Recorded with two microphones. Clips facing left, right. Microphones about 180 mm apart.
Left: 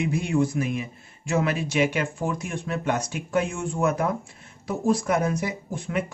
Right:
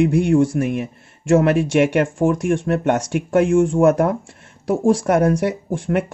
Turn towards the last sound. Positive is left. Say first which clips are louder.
# right 8 dB
turn(degrees=-75)  # may be behind; listen again after turning